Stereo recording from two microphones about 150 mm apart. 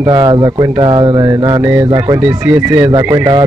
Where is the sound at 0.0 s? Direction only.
25° right (ahead or behind).